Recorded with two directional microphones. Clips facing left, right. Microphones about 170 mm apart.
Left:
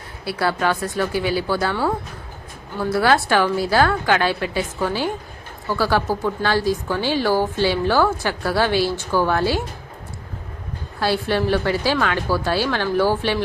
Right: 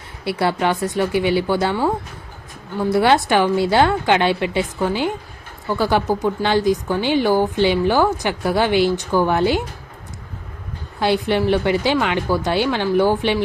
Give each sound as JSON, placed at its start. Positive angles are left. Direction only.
{"t": 0.3, "sound": "a woman's voice", "side_deg": -20}
{"t": 2.7, "sound": "a woman's voice", "side_deg": -20}
{"t": 11.0, "sound": "speech", "side_deg": -20}